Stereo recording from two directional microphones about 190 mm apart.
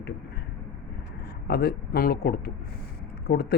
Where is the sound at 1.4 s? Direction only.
55° left (ahead or behind).